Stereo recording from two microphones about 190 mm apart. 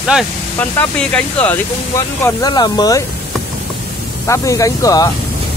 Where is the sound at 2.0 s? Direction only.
20° left (ahead or behind).